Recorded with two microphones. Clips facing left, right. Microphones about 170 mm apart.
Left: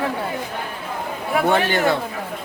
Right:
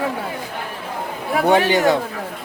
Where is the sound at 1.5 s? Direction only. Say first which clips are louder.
Right 5 dB; 15° right (ahead or behind).